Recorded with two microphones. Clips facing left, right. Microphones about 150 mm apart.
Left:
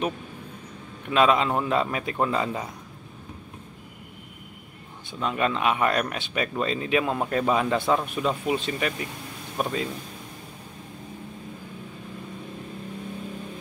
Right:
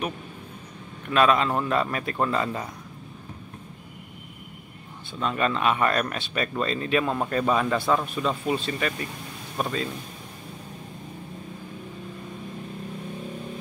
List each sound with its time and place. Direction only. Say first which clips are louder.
1.1 s speech: even; 15° left (ahead or behind)
5.2 s speech: even; 10° left (ahead or behind)